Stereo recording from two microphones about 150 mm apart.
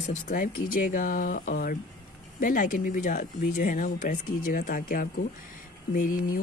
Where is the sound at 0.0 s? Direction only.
60° left (ahead or behind).